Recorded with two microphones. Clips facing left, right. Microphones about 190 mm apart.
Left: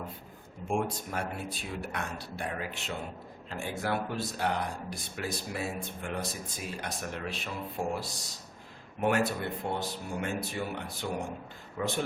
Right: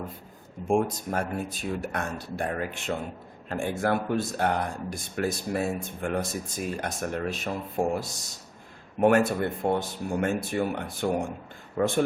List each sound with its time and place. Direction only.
0.7 s speech: 45° right (ahead or behind)